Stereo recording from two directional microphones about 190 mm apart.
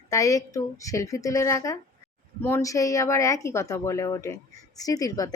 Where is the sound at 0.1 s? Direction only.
15° left (ahead or behind).